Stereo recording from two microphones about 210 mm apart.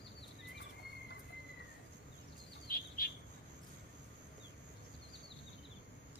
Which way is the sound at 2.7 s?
45° left (ahead or behind).